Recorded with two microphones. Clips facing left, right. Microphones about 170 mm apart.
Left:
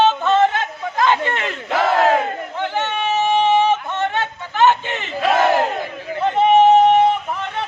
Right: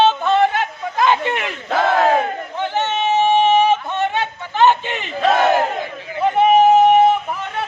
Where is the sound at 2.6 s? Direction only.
15° right (ahead or behind).